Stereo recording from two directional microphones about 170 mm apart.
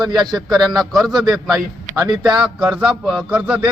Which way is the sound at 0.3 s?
Centre (ahead or behind).